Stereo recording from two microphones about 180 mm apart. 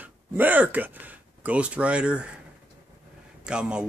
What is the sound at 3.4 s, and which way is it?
Speech, 5° right (ahead or behind).